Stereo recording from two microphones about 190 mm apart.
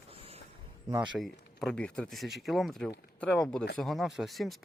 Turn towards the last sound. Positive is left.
turn(degrees=0)  # may be behind; listen again after turning